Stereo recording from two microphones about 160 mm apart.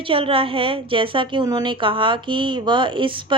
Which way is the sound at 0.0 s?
35° right (ahead or behind).